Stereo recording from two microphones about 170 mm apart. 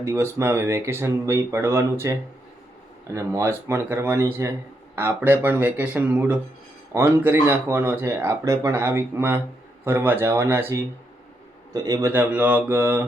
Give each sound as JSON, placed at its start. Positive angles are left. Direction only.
{"t": 0.0, "sound": "speech", "side_deg": -15}